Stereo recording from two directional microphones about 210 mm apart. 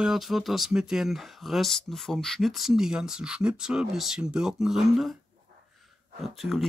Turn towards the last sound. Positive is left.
turn(degrees=0)  # may be behind; listen again after turning